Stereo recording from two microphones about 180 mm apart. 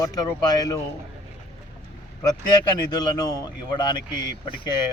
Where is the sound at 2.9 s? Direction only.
20° left (ahead or behind).